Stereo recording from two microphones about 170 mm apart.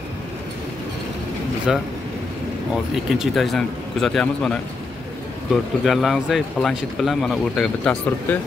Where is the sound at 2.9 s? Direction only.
Centre (ahead or behind).